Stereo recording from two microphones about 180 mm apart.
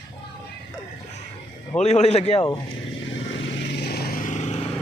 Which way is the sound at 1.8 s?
35° left (ahead or behind).